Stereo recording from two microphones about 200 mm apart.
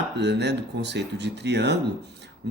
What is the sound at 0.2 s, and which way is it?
Speech, 60° right (ahead or behind).